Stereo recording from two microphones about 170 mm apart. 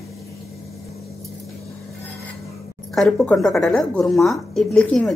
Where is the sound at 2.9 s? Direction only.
5° left (ahead or behind).